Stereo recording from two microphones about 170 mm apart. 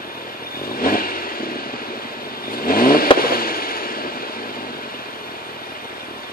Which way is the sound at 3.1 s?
60° left (ahead or behind).